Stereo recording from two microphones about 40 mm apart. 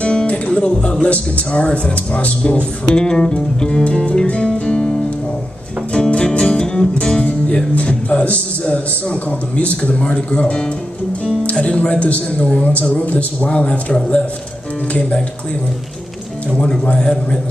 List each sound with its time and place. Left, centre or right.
0.0 s music: left
0.5 s speech: left
3.8 s music: left
5.9 s music: left
7.2 s speech: left
17.0 s speech: left